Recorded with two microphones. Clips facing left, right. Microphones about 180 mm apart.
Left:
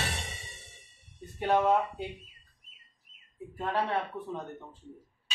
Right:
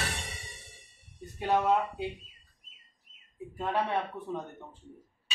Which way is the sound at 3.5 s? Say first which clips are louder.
Even; 15° right (ahead or behind).